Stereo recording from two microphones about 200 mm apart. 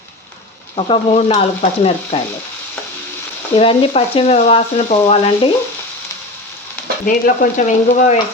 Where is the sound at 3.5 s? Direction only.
25° left (ahead or behind).